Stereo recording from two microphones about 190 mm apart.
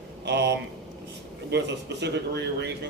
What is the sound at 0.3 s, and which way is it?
A man's voice, 65° right (ahead or behind).